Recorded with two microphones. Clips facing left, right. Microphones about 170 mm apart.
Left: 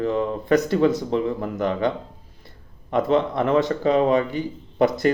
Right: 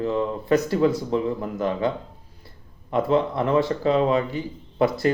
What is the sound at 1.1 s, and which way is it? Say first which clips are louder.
Speech: left 1 dB; 60° left (ahead or behind).